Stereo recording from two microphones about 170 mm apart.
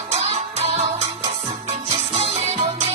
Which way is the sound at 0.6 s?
40° right (ahead or behind).